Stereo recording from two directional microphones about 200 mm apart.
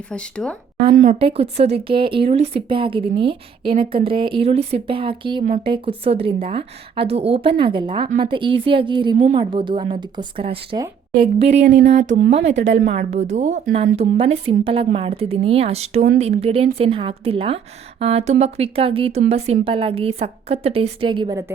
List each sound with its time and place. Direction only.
0.1 s speech: 5° left (ahead or behind)
0.9 s speech: 30° right (ahead or behind)
9.1 s speech: 35° right (ahead or behind)
9.4 s a woman's voice: 25° right (ahead or behind)
11.6 s a sound: 60° right (ahead or behind)
12.9 s speech: 35° right (ahead or behind)
13.9 s speech: 30° right (ahead or behind)